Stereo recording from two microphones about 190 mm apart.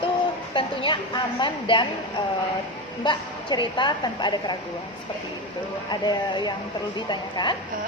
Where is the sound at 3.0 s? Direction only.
25° left (ahead or behind).